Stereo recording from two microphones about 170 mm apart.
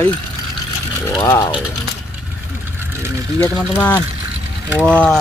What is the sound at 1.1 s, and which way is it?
Speech, 20° left (ahead or behind).